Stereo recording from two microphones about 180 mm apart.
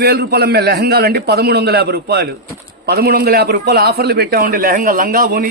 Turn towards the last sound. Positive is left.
turn(degrees=-50)  # may be behind; listen again after turning